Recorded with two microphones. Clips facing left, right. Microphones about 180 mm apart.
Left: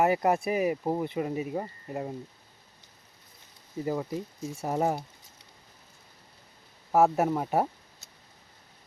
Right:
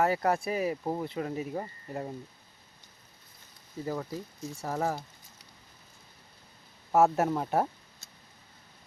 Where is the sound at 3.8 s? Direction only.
15° left (ahead or behind).